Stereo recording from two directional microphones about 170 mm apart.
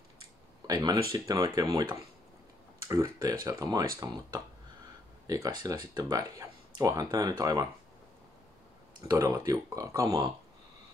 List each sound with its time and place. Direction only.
0.7 s speech: 25° right (ahead or behind)
5.2 s speech: 20° right (ahead or behind)
9.0 s speech: 20° right (ahead or behind)